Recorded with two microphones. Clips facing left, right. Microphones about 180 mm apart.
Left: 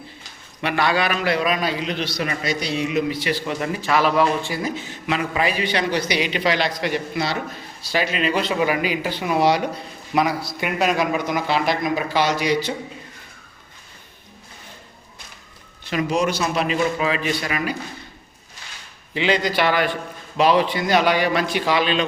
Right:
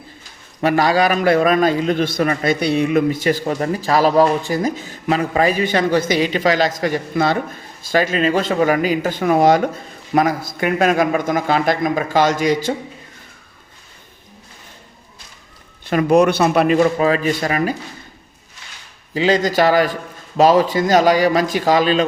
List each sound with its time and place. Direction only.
0.6 s a man's voice: 40° right (ahead or behind)
15.9 s a man's voice: 55° right (ahead or behind)
19.1 s a man's voice: 40° right (ahead or behind)